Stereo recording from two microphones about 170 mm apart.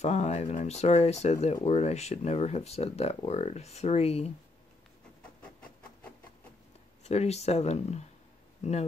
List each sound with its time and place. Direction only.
0.0 s speech: 40° left (ahead or behind)
5.4 s a sound: 5° left (ahead or behind)
7.0 s speech: 40° left (ahead or behind)